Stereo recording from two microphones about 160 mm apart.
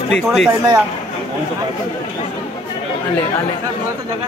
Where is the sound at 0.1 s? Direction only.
Centre (ahead or behind).